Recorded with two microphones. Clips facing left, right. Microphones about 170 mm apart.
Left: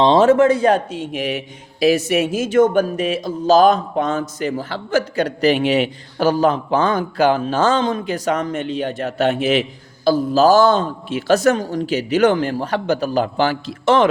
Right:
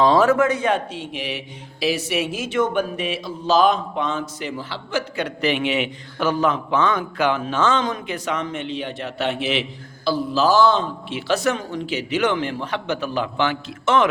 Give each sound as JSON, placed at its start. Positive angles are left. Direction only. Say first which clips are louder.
{"t": 0.0, "sound": "a man's voice", "louder": "left 4 dB", "side_deg": 25}